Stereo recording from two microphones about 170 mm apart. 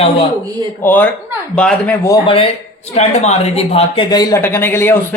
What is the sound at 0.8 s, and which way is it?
A man's voice, 10° left (ahead or behind).